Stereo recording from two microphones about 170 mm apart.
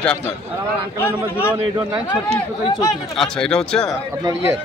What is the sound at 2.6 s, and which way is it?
Speech, 25° left (ahead or behind).